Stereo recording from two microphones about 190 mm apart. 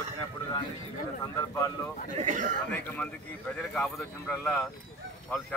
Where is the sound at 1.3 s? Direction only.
15° left (ahead or behind).